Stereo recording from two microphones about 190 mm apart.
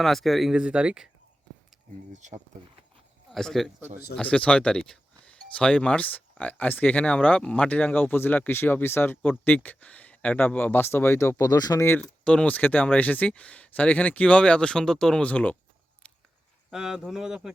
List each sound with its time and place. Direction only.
0.0 s speech: centre (ahead or behind)
2.1 s speech: 40° right (ahead or behind)
3.2 s speech: centre (ahead or behind)
16.7 s speech: 5° right (ahead or behind)